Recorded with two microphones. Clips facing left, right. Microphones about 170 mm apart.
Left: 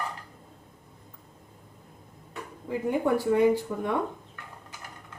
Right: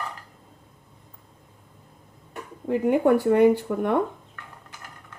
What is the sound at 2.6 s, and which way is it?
Speech, 65° right (ahead or behind).